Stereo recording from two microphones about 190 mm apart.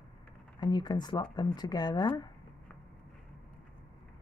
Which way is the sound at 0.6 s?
20° left (ahead or behind).